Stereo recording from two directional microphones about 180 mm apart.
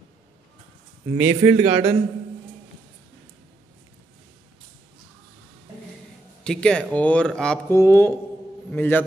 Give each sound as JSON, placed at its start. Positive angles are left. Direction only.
{"t": 1.1, "sound": "speech", "side_deg": -20}
{"t": 6.4, "sound": "a man's voice", "side_deg": 5}